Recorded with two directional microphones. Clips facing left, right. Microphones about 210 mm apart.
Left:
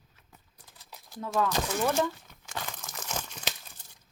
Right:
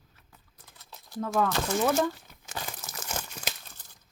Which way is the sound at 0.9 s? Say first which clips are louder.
Right 4 dB; 15° left (ahead or behind).